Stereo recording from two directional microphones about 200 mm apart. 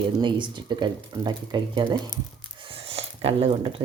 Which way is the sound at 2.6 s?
30° right (ahead or behind).